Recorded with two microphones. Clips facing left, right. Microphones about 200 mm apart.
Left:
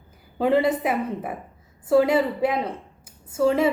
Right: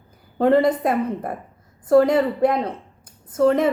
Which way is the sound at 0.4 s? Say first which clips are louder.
Right 3 dB; 5° left (ahead or behind).